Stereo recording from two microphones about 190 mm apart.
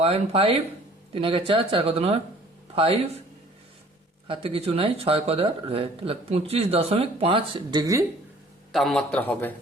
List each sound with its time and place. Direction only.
0.0 s speech: 30° right (ahead or behind)
4.3 s speech: 30° right (ahead or behind)
8.7 s a man's voice: centre (ahead or behind)